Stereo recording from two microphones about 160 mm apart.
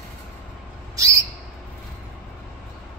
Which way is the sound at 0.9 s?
20° right (ahead or behind).